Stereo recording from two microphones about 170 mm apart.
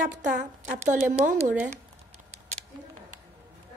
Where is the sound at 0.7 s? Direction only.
45° right (ahead or behind).